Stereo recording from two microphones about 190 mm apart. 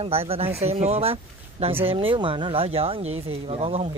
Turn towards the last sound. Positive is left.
turn(degrees=-30)  # may be behind; listen again after turning